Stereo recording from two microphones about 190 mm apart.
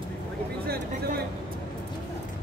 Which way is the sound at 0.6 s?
55° right (ahead or behind).